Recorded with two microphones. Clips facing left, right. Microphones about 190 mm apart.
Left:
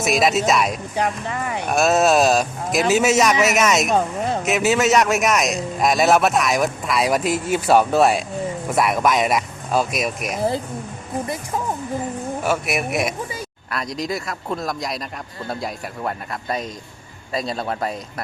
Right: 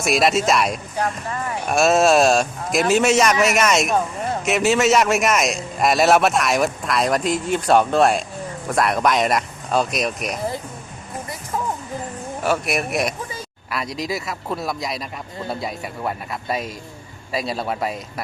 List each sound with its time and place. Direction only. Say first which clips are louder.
0.0 s a man's voice: even; centre (ahead or behind)
0.9 s speech: left 3 dB; 20° left (ahead or behind)
1.6 s a man's voice: right 1 dB; centre (ahead or behind)
12.5 s a man's voice: right 2 dB; 5° left (ahead or behind)